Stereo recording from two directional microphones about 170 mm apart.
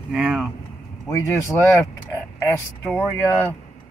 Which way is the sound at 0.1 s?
5° right (ahead or behind).